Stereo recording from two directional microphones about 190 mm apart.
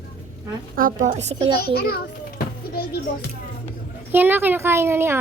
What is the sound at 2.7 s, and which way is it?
Speech, 55° left (ahead or behind).